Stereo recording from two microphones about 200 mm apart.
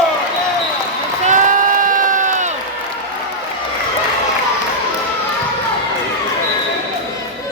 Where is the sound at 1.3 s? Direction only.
40° right (ahead or behind).